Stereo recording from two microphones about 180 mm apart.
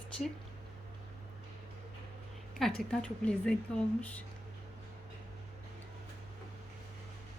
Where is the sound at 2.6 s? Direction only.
5° left (ahead or behind).